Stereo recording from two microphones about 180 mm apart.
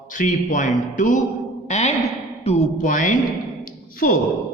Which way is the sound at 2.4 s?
35° left (ahead or behind).